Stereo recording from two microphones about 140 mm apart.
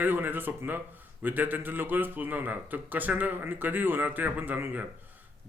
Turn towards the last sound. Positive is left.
turn(degrees=-15)  # may be behind; listen again after turning